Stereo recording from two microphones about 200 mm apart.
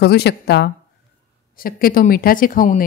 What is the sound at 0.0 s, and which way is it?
Speech, 55° left (ahead or behind).